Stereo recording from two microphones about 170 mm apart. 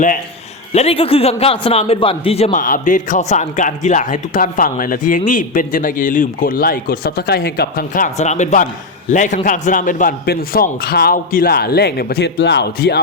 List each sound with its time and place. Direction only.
0.7 s a man's voice: 35° left (ahead or behind)
2.5 s a man's voice: 50° left (ahead or behind); by 13.0 s 75° left (ahead or behind)